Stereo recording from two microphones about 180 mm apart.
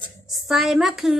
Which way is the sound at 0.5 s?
Centre (ahead or behind).